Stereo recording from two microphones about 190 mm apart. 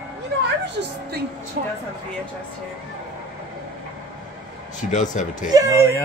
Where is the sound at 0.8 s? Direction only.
55° right (ahead or behind).